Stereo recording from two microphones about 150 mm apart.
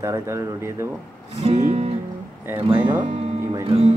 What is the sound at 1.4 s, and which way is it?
Music, 40° right (ahead or behind).